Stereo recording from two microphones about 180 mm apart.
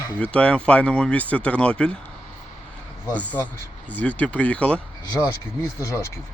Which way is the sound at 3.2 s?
10° left (ahead or behind).